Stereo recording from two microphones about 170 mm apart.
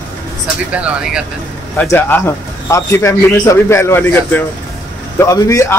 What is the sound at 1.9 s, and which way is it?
Speech, 15° left (ahead or behind).